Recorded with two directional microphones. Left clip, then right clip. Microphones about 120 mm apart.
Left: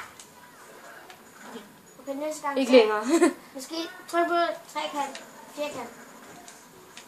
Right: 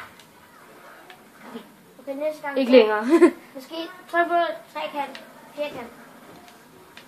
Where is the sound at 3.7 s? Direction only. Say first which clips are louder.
Right 4 dB; 25° left (ahead or behind).